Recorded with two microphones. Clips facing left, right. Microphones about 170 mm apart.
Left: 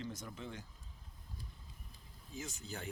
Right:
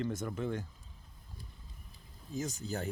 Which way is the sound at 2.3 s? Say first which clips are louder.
Right 9 dB; 40° right (ahead or behind).